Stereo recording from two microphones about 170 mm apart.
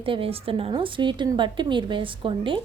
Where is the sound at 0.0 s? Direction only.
30° right (ahead or behind).